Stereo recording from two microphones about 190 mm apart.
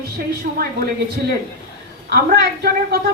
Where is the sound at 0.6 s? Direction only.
55° right (ahead or behind).